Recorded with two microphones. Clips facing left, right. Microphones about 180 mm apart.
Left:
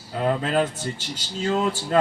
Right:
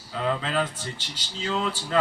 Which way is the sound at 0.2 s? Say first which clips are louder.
Left 4 dB; 50° left (ahead or behind).